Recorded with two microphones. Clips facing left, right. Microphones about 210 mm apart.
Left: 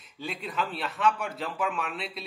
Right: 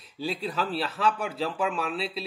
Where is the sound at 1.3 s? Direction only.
Centre (ahead or behind).